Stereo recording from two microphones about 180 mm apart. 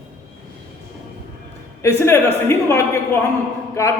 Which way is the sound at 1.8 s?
15° left (ahead or behind).